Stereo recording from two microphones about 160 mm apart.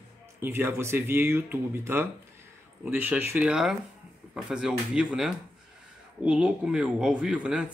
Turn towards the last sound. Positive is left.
turn(degrees=-5)  # may be behind; listen again after turning